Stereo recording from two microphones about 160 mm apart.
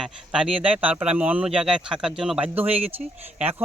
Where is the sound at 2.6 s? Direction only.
40° right (ahead or behind).